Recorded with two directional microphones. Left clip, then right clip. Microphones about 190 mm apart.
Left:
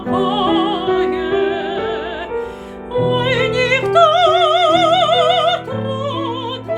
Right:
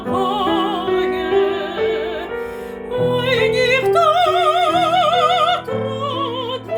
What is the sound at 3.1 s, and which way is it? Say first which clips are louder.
Music: even; 10° left (ahead or behind).